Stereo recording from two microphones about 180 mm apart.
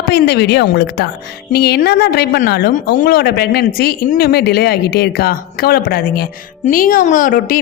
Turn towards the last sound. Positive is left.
turn(degrees=50)  # may be behind; listen again after turning